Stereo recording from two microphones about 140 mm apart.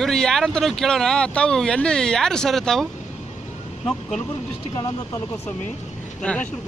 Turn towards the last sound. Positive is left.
turn(degrees=10)  # may be behind; listen again after turning